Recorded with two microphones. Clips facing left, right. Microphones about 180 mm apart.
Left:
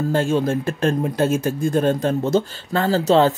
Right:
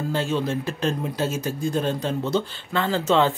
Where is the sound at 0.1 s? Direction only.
50° left (ahead or behind).